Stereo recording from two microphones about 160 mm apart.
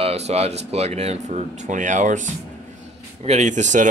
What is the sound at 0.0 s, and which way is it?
Speech, 40° right (ahead or behind).